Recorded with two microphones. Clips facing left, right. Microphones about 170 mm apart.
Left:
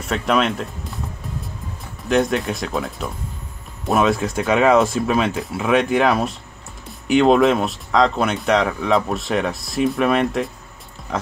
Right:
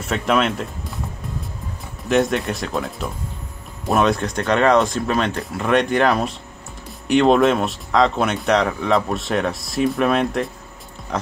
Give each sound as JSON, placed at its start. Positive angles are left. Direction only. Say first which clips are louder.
{"t": 0.0, "sound": "speech", "louder": "even", "side_deg": 0}
{"t": 2.0, "sound": "speech", "louder": "even", "side_deg": 0}